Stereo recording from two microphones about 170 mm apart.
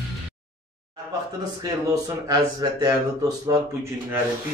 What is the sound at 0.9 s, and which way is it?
Speech, 20° right (ahead or behind).